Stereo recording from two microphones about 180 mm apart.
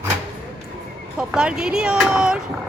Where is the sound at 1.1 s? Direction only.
5° right (ahead or behind).